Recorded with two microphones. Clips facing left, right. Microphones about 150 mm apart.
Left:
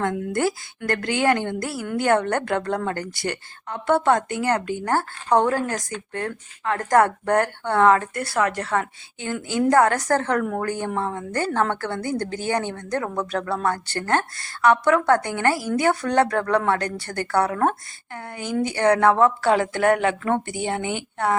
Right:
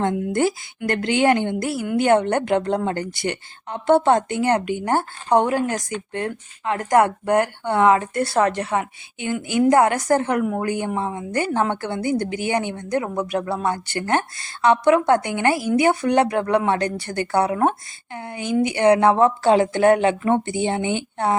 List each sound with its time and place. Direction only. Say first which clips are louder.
0.0 s a woman's voice: right 3 dB; 20° right (ahead or behind)
8.6 s a woman's voice: right 1 dB; 15° right (ahead or behind)